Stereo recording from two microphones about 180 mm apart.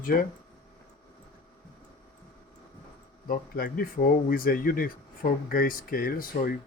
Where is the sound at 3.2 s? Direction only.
55° left (ahead or behind).